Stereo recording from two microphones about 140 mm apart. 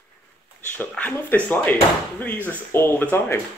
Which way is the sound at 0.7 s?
15° left (ahead or behind).